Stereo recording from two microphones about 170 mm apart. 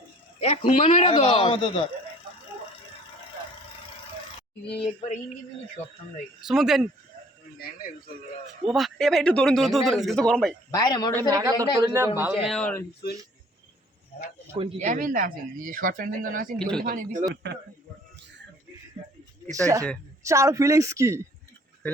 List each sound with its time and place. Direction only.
0.4 s speech: 35° left (ahead or behind)
4.8 s speech: 35° left (ahead or behind)
6.4 s speech: centre (ahead or behind)
8.6 s speech: centre (ahead or behind)
10.7 s a man's voice: 25° left (ahead or behind)
11.2 s a man's voice: 20° right (ahead or behind)
12.5 s speech: 5° left (ahead or behind)
14.5 s speech: 40° right (ahead or behind)
16.6 s speech: 5° left (ahead or behind)
16.8 s speech: 55° right (ahead or behind)
19.5 s a man's voice: 20° right (ahead or behind)